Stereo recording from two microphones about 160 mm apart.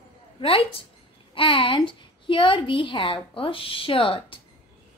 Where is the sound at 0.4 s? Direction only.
35° left (ahead or behind).